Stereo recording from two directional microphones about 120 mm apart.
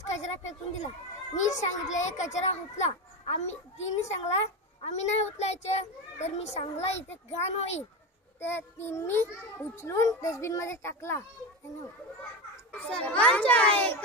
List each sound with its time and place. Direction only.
0.2 s speech: 70° left (ahead or behind)
1.3 s a child's voice: 80° left; by 7.8 s 65° left (ahead or behind)
8.4 s a child's voice: 20° left (ahead or behind)
12.8 s a child's voice: 10° left (ahead or behind)